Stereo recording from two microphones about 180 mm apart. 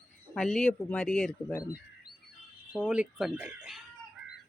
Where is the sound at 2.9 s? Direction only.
5° right (ahead or behind).